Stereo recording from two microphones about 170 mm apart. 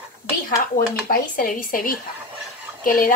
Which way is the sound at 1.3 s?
55° left (ahead or behind).